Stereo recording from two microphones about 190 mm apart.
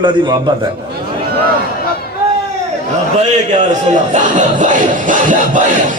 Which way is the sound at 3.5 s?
40° right (ahead or behind).